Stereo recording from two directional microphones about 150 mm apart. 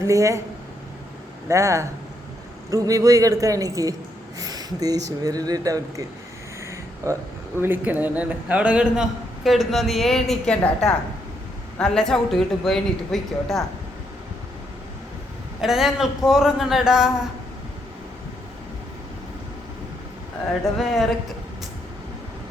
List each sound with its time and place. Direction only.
0.1 s speech: 20° right (ahead or behind)
1.5 s speech: 20° right (ahead or behind)
6.7 s a sound: 20° right (ahead or behind)
7.6 s a man's voice: 10° right (ahead or behind)
15.6 s a man's voice: centre (ahead or behind)
20.7 s a man's voice: centre (ahead or behind)